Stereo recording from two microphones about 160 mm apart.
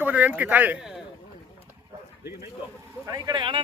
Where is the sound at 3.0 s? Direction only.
20° right (ahead or behind).